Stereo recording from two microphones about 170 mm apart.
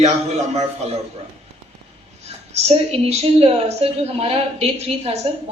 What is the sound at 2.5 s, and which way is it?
A woman's voice, 40° right (ahead or behind).